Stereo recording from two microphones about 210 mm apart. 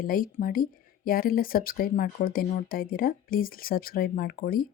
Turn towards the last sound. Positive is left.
turn(degrees=45)  # may be behind; listen again after turning